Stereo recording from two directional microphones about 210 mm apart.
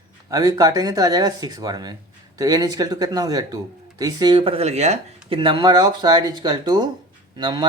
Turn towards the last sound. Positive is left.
turn(degrees=-20)  # may be behind; listen again after turning